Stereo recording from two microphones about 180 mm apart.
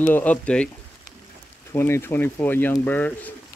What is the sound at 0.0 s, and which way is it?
Speech, 10° left (ahead or behind).